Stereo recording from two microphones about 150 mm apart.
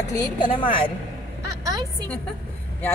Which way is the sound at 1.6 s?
25° right (ahead or behind).